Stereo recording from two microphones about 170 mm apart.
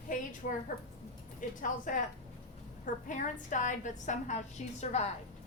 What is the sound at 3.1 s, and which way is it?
A woman's voice, 45° left (ahead or behind).